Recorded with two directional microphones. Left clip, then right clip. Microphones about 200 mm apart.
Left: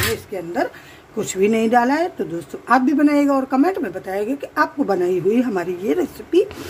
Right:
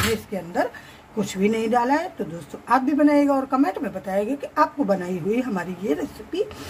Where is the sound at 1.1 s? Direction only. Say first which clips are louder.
Left 5 dB; 15° left (ahead or behind).